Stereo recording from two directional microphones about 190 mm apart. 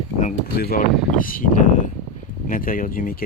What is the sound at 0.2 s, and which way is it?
Speech, 45° left (ahead or behind).